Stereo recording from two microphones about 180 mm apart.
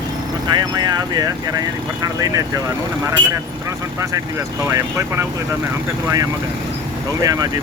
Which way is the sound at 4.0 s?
15° right (ahead or behind).